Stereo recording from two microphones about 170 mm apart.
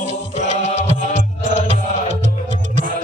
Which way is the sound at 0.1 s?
40° right (ahead or behind).